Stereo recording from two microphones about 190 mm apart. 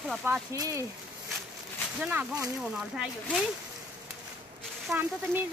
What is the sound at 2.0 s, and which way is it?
Speech, 10° right (ahead or behind).